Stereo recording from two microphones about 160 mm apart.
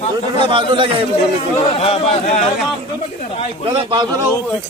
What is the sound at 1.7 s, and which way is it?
Speech, 40° left (ahead or behind).